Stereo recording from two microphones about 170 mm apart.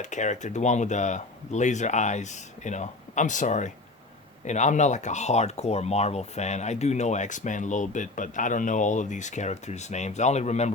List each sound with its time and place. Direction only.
0.0 s speech: 45° left (ahead or behind)